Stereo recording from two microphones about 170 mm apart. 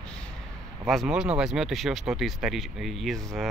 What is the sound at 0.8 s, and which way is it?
Speech, centre (ahead or behind).